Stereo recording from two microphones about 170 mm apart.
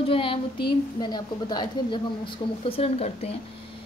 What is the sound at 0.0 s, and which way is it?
A woman's voice, 30° left (ahead or behind).